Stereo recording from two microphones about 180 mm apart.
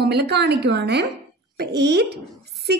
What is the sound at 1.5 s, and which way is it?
Child singing, 65° right (ahead or behind).